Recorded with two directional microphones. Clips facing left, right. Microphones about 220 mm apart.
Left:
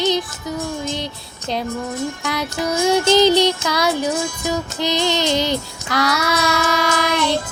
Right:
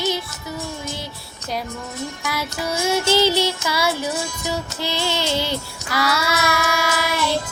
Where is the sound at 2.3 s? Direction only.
15° left (ahead or behind).